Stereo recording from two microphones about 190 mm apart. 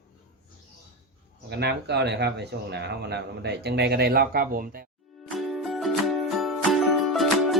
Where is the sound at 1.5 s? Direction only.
60° right (ahead or behind).